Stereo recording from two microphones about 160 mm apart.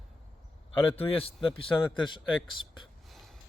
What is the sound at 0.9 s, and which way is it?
Speech, 35° left (ahead or behind).